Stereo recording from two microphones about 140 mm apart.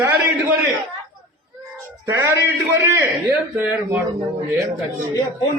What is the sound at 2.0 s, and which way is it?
A man's voice, 20° right (ahead or behind).